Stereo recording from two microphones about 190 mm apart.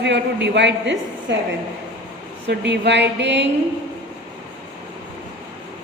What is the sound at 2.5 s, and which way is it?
Speech, 65° right (ahead or behind).